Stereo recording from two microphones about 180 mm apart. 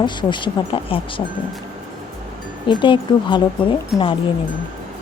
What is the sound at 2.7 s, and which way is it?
Speech, 25° left (ahead or behind).